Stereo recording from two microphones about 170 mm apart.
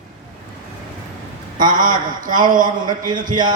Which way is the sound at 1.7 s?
50° right (ahead or behind).